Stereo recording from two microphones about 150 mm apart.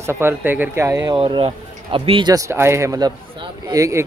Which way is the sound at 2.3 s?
20° right (ahead or behind).